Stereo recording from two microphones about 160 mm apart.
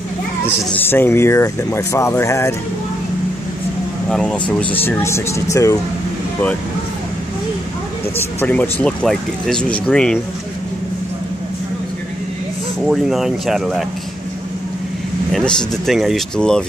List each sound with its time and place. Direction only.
0.5 s speech: 15° left (ahead or behind)
4.1 s speech: 5° left (ahead or behind)
8.2 s speech: 10° left (ahead or behind)
12.8 s speech: centre (ahead or behind)
15.3 s speech: centre (ahead or behind)